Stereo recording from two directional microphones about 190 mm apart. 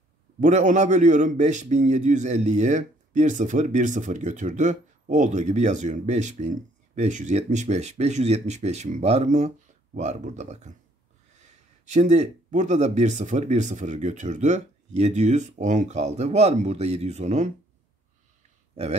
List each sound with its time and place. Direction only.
0.4 s a man's voice: 40° right (ahead or behind)
11.8 s a man's voice: 40° right (ahead or behind)